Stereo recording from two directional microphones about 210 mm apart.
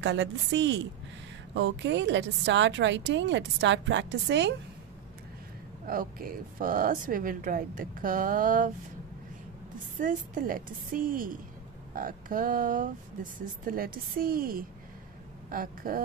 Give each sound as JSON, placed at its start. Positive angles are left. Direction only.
{"t": 0.0, "sound": "a woman's voice", "side_deg": -55}
{"t": 5.9, "sound": "speech", "side_deg": -40}
{"t": 9.9, "sound": "speech", "side_deg": -40}
{"t": 15.5, "sound": "a sound", "side_deg": -40}